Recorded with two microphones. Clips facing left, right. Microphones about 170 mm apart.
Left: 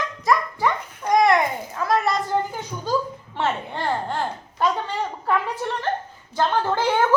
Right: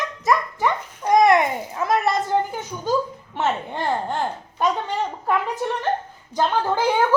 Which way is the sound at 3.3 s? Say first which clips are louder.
Right 1 dB; 15° right (ahead or behind).